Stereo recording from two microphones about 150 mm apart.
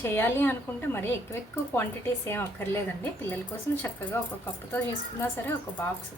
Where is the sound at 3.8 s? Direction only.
15° left (ahead or behind).